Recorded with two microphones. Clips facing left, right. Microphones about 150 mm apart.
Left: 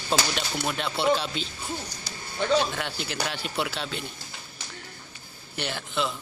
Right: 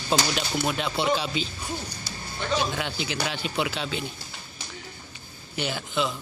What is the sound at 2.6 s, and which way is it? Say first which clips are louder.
Speech: right 1 dB; 5° right (ahead or behind).